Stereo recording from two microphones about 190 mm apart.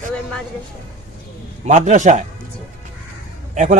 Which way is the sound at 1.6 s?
40° right (ahead or behind).